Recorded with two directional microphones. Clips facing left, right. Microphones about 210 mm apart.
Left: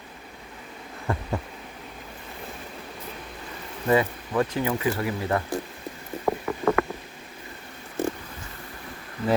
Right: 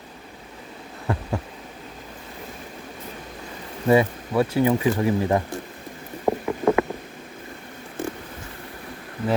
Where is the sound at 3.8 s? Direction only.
15° right (ahead or behind).